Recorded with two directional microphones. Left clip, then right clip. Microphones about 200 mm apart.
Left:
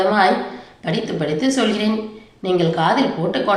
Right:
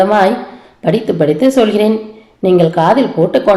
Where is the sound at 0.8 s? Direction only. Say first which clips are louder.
Right 10 dB; 40° right (ahead or behind).